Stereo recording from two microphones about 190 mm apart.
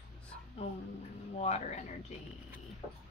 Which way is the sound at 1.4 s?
40° left (ahead or behind).